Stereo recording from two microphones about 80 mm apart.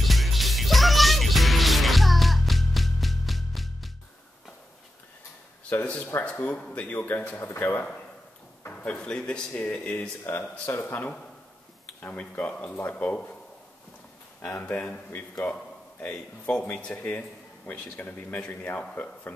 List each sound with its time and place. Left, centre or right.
0.0 s music: centre
5.7 s speech: centre
8.7 s a man's voice: centre
10.2 s speech: left
11.8 s a man's voice: centre
14.5 s speech: left
15.4 s a man's voice: centre